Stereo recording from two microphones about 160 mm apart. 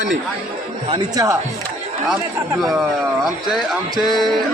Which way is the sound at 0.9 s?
25° right (ahead or behind).